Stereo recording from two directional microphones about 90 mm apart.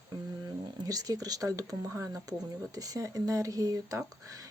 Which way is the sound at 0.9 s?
40° right (ahead or behind).